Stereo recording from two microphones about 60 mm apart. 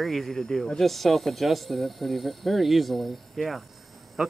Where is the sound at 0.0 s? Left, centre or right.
Centre.